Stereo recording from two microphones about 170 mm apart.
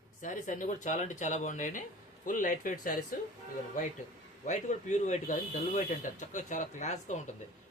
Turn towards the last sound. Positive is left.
turn(degrees=45)  # may be behind; listen again after turning